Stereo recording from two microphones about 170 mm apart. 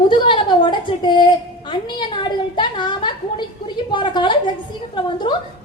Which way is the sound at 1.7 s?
25° left (ahead or behind).